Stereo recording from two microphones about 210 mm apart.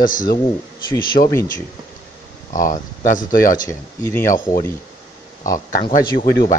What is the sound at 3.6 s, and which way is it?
Speech, 10° left (ahead or behind).